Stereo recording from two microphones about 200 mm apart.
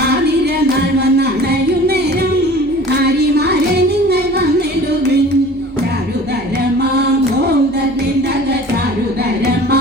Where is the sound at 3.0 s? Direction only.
55° right (ahead or behind).